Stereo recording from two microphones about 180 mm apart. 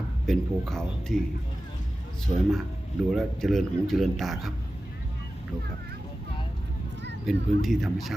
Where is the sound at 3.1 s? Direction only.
Centre (ahead or behind).